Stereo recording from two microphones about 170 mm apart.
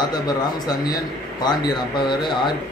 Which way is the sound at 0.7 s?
25° left (ahead or behind).